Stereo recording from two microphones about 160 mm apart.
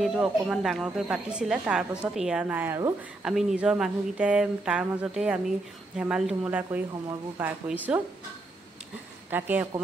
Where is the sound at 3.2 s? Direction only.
5° right (ahead or behind).